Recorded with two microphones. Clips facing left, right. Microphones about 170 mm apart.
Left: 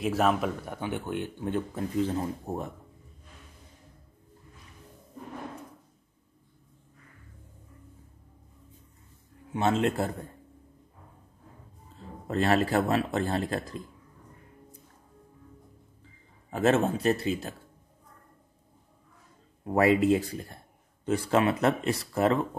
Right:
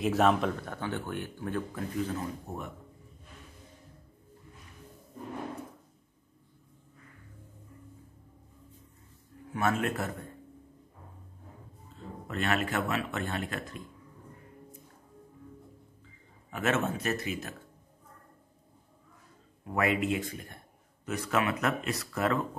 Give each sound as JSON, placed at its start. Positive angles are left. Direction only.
{"t": 0.0, "sound": "speech", "side_deg": 0}
{"t": 9.5, "sound": "speech", "side_deg": 25}
{"t": 12.3, "sound": "a man's voice", "side_deg": 35}
{"t": 16.4, "sound": "a man's voice", "side_deg": 35}
{"t": 19.6, "sound": "a man's voice", "side_deg": 35}